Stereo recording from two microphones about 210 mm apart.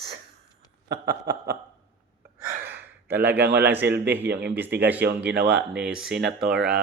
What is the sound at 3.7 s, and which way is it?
Speech, 10° right (ahead or behind).